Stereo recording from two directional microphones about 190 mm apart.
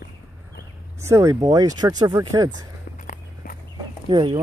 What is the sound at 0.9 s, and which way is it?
Speech, 15° right (ahead or behind).